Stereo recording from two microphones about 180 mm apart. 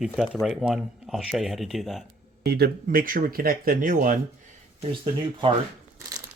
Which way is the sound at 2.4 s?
60° right (ahead or behind).